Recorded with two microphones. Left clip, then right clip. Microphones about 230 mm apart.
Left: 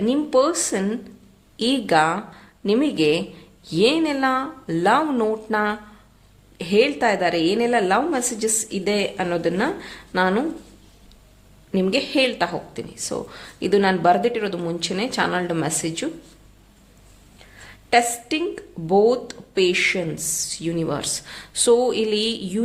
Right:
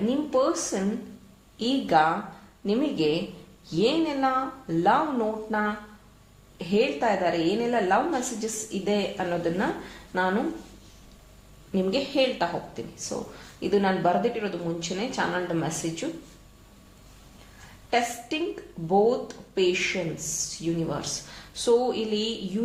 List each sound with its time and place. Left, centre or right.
0.1 s a woman's voice: left
11.7 s a woman's voice: left
18.3 s a woman's voice: left